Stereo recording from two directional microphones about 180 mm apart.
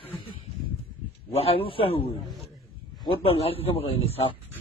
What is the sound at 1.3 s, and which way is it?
A man's voice, 30° left (ahead or behind).